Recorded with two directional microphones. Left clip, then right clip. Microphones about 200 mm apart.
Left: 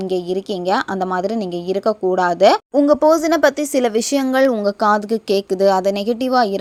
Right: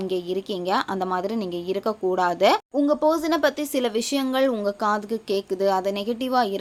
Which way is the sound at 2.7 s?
35° left (ahead or behind).